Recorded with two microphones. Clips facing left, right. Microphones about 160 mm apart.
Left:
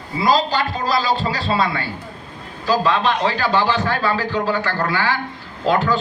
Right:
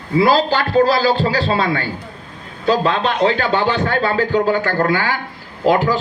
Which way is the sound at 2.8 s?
55° right (ahead or behind).